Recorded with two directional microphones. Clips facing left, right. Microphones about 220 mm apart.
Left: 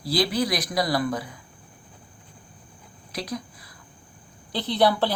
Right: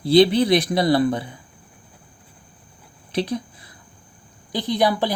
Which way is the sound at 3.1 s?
30° right (ahead or behind).